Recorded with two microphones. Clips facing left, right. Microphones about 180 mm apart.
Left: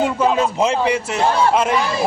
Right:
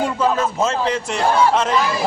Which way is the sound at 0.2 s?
15° left (ahead or behind).